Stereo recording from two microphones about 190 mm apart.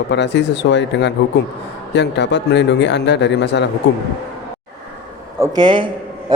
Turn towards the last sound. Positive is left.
turn(degrees=-25)  # may be behind; listen again after turning